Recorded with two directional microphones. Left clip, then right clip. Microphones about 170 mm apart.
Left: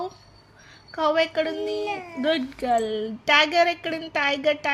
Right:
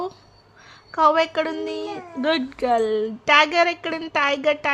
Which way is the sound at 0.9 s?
30° right (ahead or behind).